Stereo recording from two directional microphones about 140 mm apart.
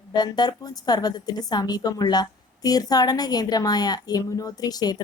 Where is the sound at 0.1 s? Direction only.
30° left (ahead or behind).